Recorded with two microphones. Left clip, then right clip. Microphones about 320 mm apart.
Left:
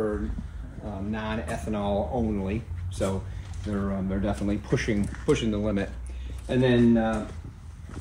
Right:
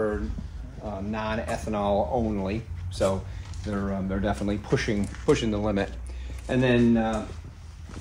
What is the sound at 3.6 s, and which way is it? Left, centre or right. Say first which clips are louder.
Speech: right 1 dB; right.